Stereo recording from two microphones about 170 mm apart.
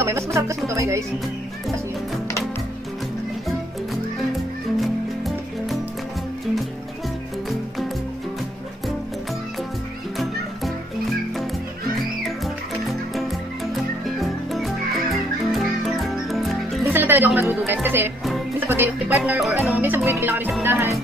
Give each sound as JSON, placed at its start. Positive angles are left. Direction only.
{"t": 0.0, "sound": "music", "side_deg": -15}
{"t": 4.7, "sound": "music", "side_deg": 0}
{"t": 12.8, "sound": "music", "side_deg": 0}
{"t": 16.8, "sound": "music", "side_deg": -10}